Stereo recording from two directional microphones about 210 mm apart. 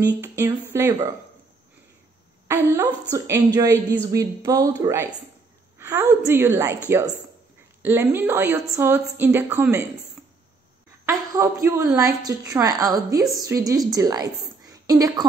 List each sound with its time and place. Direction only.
0.0 s a woman's voice: 10° right (ahead or behind)
2.4 s a woman's voice: 10° right (ahead or behind)
7.8 s a woman's voice: 10° right (ahead or behind)
11.1 s a woman's voice: 15° right (ahead or behind)